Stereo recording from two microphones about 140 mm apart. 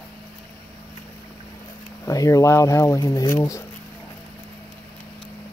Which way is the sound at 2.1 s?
25° left (ahead or behind).